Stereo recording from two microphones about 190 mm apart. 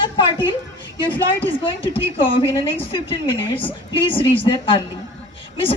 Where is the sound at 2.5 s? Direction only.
15° left (ahead or behind).